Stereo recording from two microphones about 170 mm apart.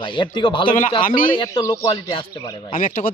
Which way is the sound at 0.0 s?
30° left (ahead or behind).